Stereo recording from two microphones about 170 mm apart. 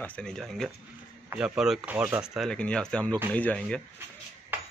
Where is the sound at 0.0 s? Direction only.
5° left (ahead or behind).